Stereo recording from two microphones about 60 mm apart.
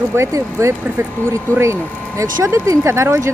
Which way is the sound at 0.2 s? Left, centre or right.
Right.